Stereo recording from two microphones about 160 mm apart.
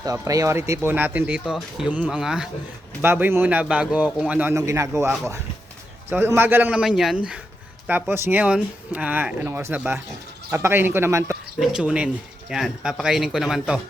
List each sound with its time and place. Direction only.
0.0 s a man's voice: 20° right (ahead or behind)
11.6 s speech: 5° right (ahead or behind)